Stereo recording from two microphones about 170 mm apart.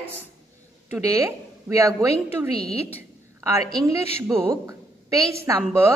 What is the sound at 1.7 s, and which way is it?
Speech, 20° right (ahead or behind).